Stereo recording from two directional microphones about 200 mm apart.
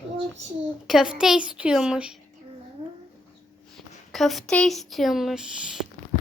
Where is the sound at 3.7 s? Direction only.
Centre (ahead or behind).